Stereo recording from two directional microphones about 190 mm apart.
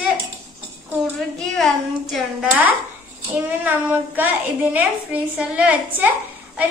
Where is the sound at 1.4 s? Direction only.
Centre (ahead or behind).